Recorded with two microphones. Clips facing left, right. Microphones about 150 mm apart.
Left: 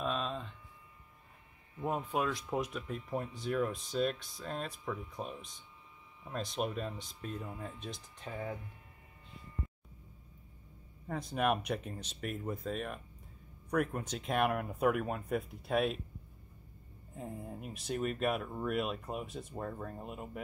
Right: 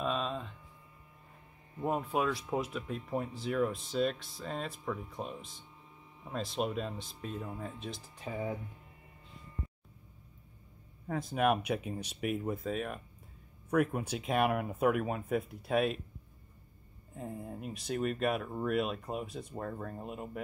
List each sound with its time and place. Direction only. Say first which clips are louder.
0.0 s a sound: right 2 dB; centre (ahead or behind)
1.9 s speech: right 2 dB; centre (ahead or behind)
8.3 s speech: right 4 dB; 15° right (ahead or behind)
11.1 s speech: right 3 dB; centre (ahead or behind)
17.1 s speech: right 2 dB; centre (ahead or behind)